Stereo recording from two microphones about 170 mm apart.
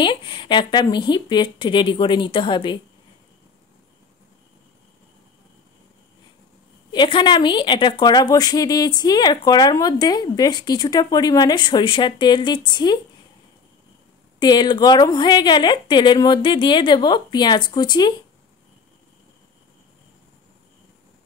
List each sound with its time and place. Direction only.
0.0 s speech: 30° left (ahead or behind)
6.9 s speech: 30° left (ahead or behind)
14.4 s speech: 25° left (ahead or behind)